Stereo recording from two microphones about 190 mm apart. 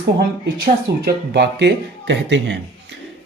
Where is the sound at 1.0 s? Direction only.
60° right (ahead or behind).